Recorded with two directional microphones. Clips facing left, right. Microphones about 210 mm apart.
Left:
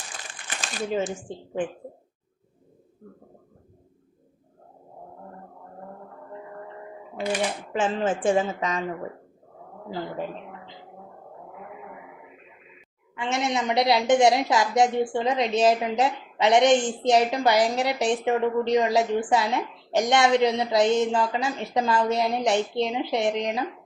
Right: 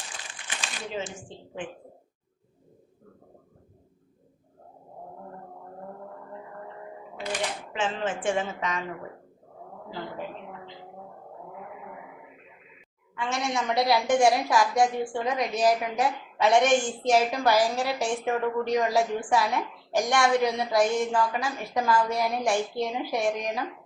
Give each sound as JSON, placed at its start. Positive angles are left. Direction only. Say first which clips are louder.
{"t": 0.4, "sound": "shuffling cards", "louder": "left 7 dB", "side_deg": 45}
{"t": 7.7, "sound": "a woman's voice", "louder": "left 5 dB", "side_deg": 40}
{"t": 13.1, "sound": "a woman's voice", "louder": "left 3 dB", "side_deg": 20}